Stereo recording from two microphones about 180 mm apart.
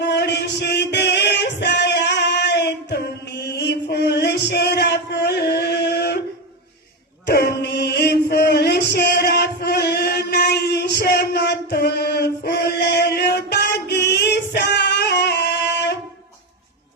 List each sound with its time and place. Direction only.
0.0 s music: 70° left (ahead or behind)
7.3 s chant: 65° left (ahead or behind)